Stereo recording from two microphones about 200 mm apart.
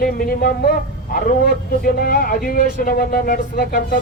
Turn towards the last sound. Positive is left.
turn(degrees=45)  # may be behind; listen again after turning